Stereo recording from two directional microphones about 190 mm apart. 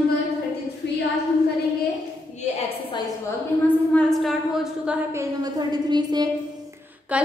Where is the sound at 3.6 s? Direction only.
5° left (ahead or behind).